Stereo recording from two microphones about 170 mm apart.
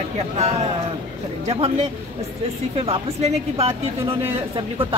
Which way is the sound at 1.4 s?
35° right (ahead or behind).